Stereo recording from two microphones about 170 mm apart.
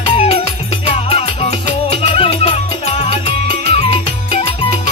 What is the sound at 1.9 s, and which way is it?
Music, 35° left (ahead or behind).